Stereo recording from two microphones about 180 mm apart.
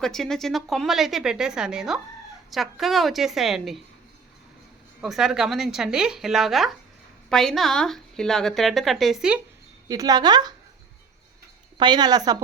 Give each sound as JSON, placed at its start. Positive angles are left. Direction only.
{"t": 0.0, "sound": "a woman's voice", "side_deg": 0}
{"t": 4.9, "sound": "a woman's voice", "side_deg": 0}
{"t": 9.9, "sound": "speech", "side_deg": -20}
{"t": 11.8, "sound": "speech", "side_deg": -25}